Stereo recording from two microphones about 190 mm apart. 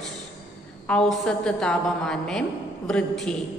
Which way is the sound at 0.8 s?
5° left (ahead or behind).